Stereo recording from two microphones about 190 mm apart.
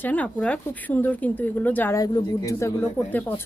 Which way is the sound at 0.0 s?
10° left (ahead or behind).